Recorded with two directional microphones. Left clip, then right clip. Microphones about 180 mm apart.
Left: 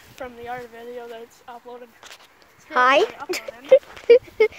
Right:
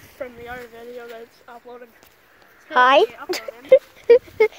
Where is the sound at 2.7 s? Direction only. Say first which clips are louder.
Right 3 dB; centre (ahead or behind).